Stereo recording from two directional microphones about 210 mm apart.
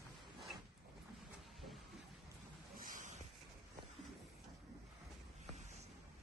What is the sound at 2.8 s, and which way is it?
Boat, 40° right (ahead or behind).